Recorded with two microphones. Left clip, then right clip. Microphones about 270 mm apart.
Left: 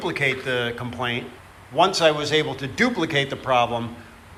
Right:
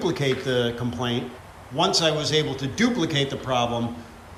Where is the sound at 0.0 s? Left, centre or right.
Centre.